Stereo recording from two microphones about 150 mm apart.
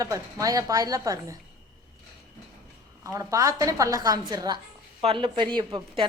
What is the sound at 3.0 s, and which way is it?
A woman's voice, 20° right (ahead or behind).